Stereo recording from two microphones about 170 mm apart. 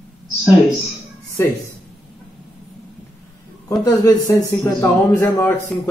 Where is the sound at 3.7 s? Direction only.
20° left (ahead or behind).